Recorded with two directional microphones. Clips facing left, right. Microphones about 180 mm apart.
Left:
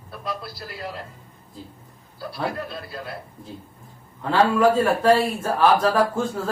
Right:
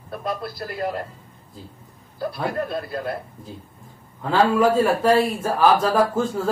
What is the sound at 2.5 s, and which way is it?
Speech, 50° right (ahead or behind).